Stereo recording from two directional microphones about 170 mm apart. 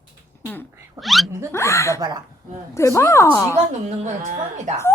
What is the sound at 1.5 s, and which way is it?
Speech, 15° left (ahead or behind).